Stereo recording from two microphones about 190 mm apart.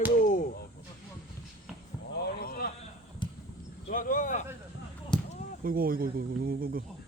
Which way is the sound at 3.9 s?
45° left (ahead or behind).